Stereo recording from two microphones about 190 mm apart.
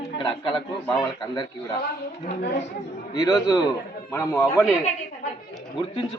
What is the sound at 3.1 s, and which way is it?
Speech, 15° left (ahead or behind).